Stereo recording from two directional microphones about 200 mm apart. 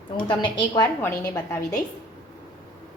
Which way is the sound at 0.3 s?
20° left (ahead or behind).